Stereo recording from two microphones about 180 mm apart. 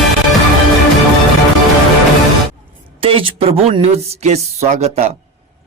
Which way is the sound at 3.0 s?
30° right (ahead or behind).